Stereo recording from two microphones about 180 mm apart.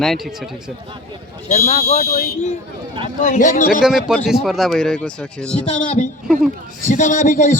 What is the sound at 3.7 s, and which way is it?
Speech, centre (ahead or behind).